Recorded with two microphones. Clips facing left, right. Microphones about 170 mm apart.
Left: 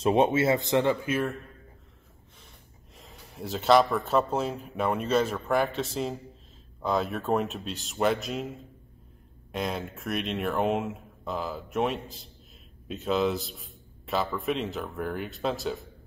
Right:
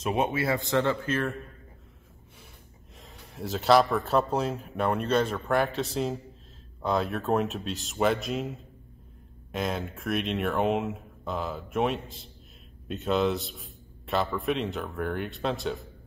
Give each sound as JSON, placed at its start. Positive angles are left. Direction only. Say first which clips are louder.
{"t": 0.0, "sound": "speech", "louder": "left 5 dB", "side_deg": 30}
{"t": 3.0, "sound": "speech", "louder": "right 1 dB", "side_deg": 0}